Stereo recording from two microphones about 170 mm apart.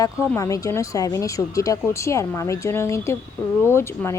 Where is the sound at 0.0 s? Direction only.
20° left (ahead or behind).